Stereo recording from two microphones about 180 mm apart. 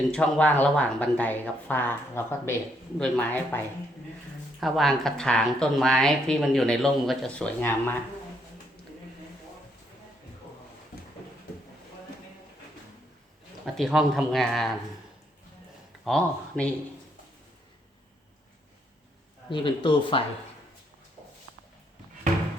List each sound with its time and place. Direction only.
0.1 s speech: 5° left (ahead or behind)
4.6 s speech: centre (ahead or behind)
13.7 s speech: centre (ahead or behind)
16.0 s speech: 5° left (ahead or behind)
19.5 s speech: 25° left (ahead or behind)